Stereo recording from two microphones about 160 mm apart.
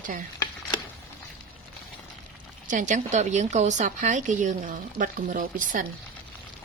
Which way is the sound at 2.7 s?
55° right (ahead or behind).